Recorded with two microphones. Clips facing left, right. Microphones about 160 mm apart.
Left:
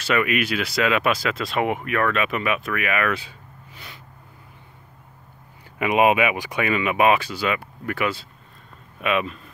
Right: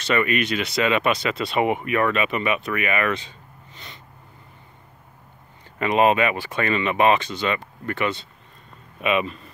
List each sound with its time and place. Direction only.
0.0 s speech: 5° left (ahead or behind)
5.8 s speech: 10° left (ahead or behind)